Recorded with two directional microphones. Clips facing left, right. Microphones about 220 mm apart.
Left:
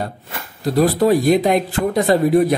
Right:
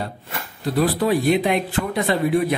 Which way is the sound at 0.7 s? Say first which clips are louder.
Left 5 dB; 40° left (ahead or behind).